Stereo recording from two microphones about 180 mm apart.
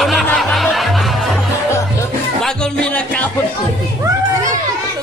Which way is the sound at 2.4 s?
5° left (ahead or behind).